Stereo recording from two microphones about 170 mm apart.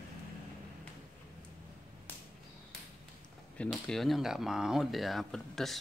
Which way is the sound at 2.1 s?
10° left (ahead or behind).